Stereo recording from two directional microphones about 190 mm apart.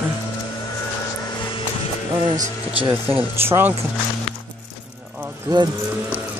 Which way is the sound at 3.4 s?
10° right (ahead or behind).